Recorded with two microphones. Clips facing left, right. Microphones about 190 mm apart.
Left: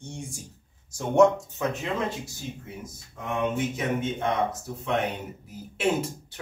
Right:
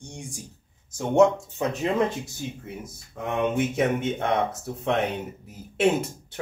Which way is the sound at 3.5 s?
60° right (ahead or behind).